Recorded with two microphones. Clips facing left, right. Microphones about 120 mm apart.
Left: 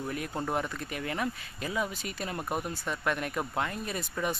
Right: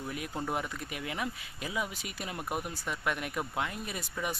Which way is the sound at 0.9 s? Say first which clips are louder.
Left 4 dB; 10° right (ahead or behind).